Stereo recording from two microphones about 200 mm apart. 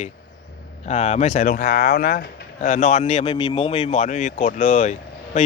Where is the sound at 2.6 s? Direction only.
40° left (ahead or behind).